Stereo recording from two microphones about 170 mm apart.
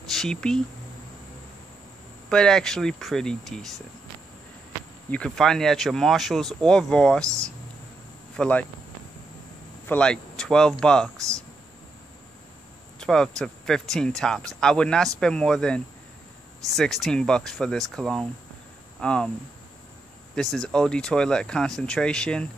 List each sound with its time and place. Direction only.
0.1 s speech: 5° left (ahead or behind)
2.2 s speech: 5° left (ahead or behind)
5.1 s speech: 5° left (ahead or behind)
8.4 s speech: 10° left (ahead or behind)
9.8 s speech: 5° left (ahead or behind)
11.1 s speech: 20° right (ahead or behind)
13.0 s speech: 5° left (ahead or behind)
20.5 s speech: 5° left (ahead or behind)